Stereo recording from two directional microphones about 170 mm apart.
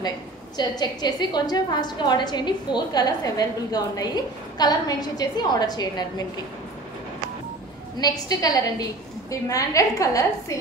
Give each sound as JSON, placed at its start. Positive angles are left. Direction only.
{"t": 0.6, "sound": "a woman's voice", "side_deg": 25}
{"t": 8.0, "sound": "a woman's voice", "side_deg": 20}